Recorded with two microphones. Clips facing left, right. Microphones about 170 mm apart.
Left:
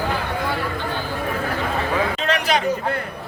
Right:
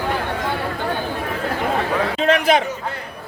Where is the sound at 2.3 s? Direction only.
50° right (ahead or behind).